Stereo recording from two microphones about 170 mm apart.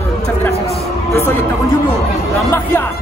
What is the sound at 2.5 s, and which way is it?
Speech, 10° left (ahead or behind).